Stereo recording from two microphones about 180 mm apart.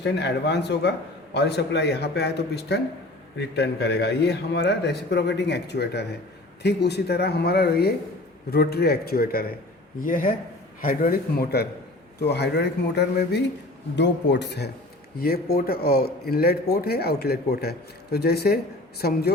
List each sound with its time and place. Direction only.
0.0 s a man's voice: 70° left (ahead or behind); by 11.6 s 55° left (ahead or behind)
12.2 s a man's voice: 70° left (ahead or behind)
15.2 s speech: 55° left (ahead or behind)